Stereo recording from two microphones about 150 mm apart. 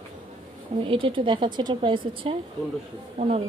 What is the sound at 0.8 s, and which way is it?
A woman's voice, 35° right (ahead or behind).